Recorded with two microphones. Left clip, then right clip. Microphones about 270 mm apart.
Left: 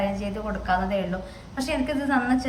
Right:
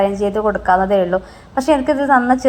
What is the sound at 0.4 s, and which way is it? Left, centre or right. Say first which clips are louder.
A woman's voice: right 10 dB; right.